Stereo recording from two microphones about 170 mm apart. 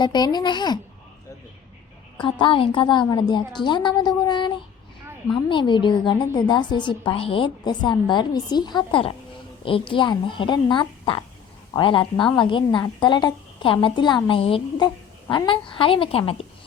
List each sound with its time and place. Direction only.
0.0 s a woman's voice: 25° left (ahead or behind)
2.2 s a woman's voice: 30° left (ahead or behind)